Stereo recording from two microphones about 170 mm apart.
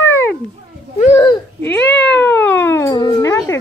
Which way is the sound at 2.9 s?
25° left (ahead or behind).